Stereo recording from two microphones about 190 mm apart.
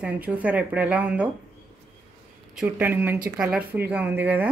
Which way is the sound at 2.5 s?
5° right (ahead or behind).